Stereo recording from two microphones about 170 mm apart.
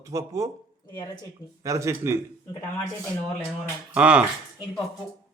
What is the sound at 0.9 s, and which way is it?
Speech, 25° left (ahead or behind).